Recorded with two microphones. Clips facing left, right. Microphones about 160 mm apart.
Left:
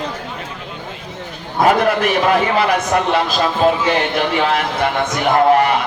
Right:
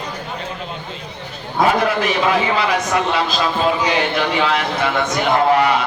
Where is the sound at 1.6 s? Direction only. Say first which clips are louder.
Left 4 dB; 50° left (ahead or behind).